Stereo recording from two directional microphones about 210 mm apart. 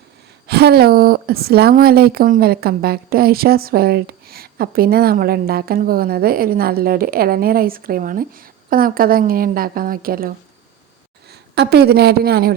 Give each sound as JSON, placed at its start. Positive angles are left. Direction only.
{"t": 0.4, "sound": "a woman's voice", "side_deg": -50}